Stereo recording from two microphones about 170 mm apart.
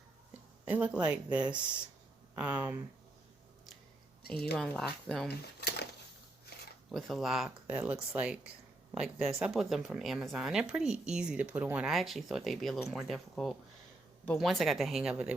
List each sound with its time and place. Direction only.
0.6 s speech: 10° right (ahead or behind)
4.5 s speech: centre (ahead or behind)
5.5 s dishes: 75° left (ahead or behind)
6.9 s speech: centre (ahead or behind)